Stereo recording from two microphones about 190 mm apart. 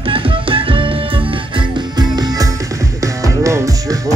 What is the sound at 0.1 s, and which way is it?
Music, 30° right (ahead or behind).